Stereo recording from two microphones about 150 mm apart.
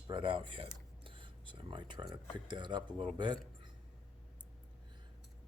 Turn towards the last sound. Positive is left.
turn(degrees=-30)  # may be behind; listen again after turning